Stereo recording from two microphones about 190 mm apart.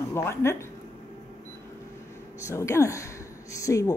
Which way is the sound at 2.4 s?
15° left (ahead or behind).